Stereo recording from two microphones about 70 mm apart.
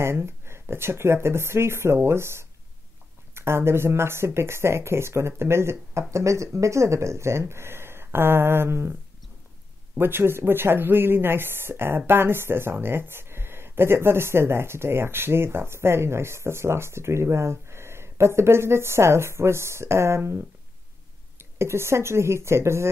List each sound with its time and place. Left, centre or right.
0.0 s speech: right
9.9 s speech: right